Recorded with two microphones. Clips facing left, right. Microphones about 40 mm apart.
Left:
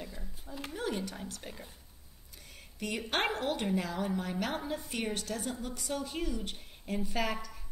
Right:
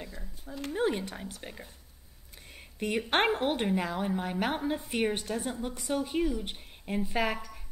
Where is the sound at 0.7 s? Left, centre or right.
Right.